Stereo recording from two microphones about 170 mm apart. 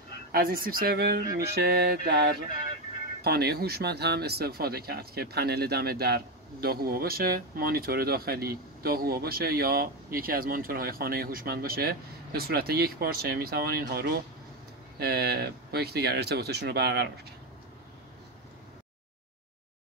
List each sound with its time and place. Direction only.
0.3 s speech: 60° right (ahead or behind)
3.3 s speech: 70° right (ahead or behind)